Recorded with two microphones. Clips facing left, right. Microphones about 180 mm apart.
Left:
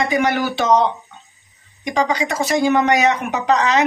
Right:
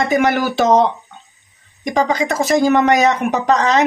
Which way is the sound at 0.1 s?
45° right (ahead or behind).